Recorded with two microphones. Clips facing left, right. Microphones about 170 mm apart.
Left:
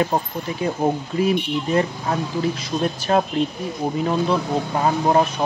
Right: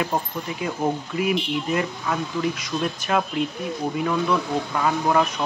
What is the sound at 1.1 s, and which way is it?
Speech, 35° left (ahead or behind).